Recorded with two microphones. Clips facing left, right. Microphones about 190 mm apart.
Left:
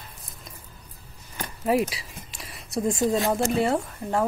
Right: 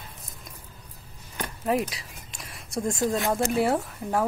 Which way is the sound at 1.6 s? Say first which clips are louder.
Left 3 dB; 5° left (ahead or behind).